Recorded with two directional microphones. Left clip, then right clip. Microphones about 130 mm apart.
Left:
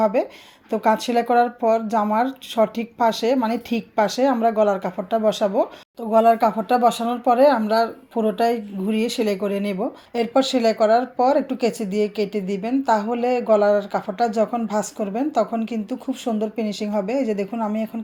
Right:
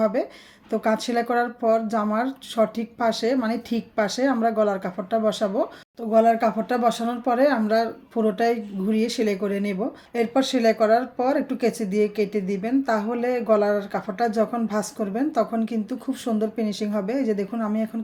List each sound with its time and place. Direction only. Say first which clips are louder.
0.0 s a woman's voice: left 3 dB; 20° left (ahead or behind)